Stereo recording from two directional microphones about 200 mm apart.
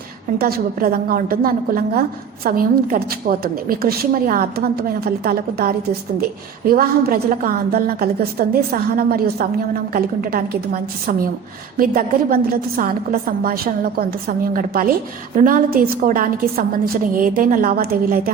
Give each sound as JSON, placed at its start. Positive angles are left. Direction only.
{"t": 0.3, "sound": "a woman's voice", "side_deg": -50}